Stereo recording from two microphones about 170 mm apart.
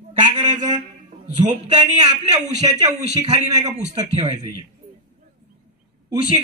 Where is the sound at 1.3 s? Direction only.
45° right (ahead or behind).